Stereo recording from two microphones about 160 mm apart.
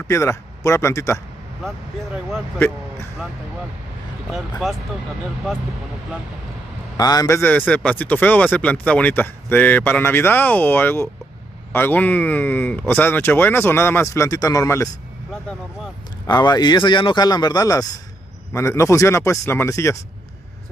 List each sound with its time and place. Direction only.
0.1 s speech: 20° left (ahead or behind)
4.3 s speech: centre (ahead or behind)
7.0 s speech: 25° left (ahead or behind)
16.3 s a man's voice: 25° left (ahead or behind)